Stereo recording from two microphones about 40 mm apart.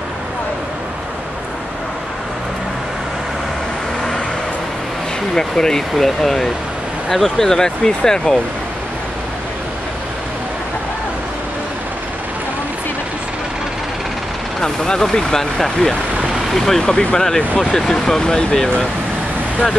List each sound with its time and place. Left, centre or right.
5.3 s speech: centre
14.6 s speech: centre
16.9 s speech: left
17.6 s speech: centre